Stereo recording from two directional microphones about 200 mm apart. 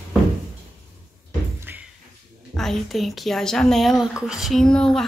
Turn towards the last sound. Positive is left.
turn(degrees=5)  # may be behind; listen again after turning